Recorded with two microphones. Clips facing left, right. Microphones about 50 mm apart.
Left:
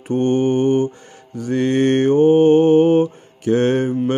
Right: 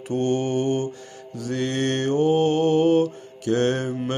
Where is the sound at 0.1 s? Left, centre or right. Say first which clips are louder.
Left 6 dB; left.